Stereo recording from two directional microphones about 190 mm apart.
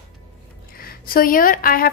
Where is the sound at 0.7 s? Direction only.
50° left (ahead or behind).